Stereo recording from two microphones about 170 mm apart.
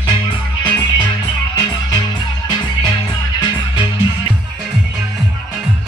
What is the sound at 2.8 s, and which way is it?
Music, 25° left (ahead or behind).